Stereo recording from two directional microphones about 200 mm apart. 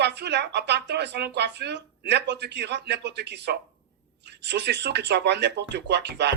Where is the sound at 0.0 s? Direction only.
55° right (ahead or behind).